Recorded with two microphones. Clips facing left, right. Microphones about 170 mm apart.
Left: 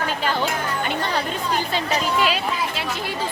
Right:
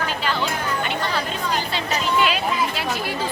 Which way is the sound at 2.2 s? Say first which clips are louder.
Right 1 dB; 35° left (ahead or behind).